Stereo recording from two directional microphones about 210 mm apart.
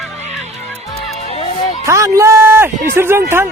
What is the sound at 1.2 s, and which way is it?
Music, 25° left (ahead or behind).